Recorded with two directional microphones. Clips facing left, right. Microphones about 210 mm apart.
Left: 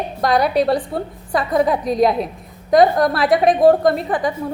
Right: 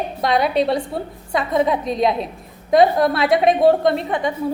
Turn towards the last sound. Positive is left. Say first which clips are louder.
# left 1 dB
turn(degrees=-25)  # may be behind; listen again after turning